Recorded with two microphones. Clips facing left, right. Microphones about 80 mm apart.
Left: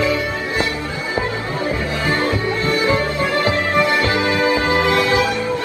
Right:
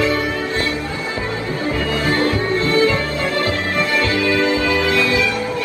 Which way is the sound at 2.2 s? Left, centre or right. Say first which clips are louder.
Right 2 dB; left.